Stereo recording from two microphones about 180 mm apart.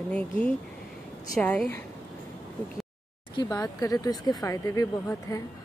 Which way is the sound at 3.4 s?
15° left (ahead or behind).